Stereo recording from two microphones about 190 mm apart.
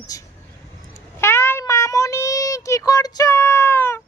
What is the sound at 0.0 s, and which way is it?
Speech, 20° left (ahead or behind).